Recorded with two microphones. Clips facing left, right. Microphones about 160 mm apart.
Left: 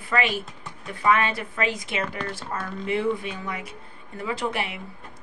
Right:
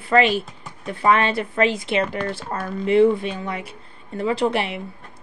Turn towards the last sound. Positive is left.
turn(degrees=-30)  # may be behind; listen again after turning